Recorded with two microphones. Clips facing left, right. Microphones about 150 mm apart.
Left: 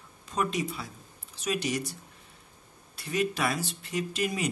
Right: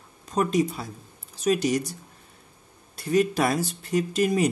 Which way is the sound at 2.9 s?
40° right (ahead or behind).